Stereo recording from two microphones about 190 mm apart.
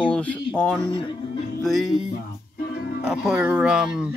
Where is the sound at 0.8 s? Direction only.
25° left (ahead or behind).